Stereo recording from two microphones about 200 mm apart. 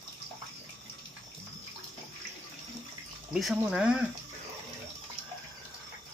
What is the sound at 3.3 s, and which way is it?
Speech, 5° right (ahead or behind).